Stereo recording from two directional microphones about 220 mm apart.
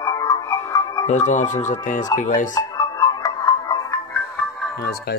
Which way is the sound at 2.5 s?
15° left (ahead or behind).